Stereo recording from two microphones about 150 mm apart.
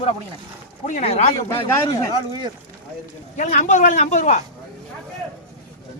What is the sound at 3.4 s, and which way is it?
Speech, 50° left (ahead or behind).